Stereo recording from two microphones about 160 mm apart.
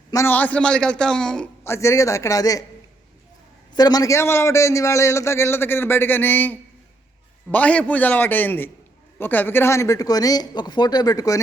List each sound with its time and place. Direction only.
0.1 s a man's voice: 15° left (ahead or behind)
1.6 s speech: 15° left (ahead or behind)
3.8 s a man's voice: 25° left (ahead or behind)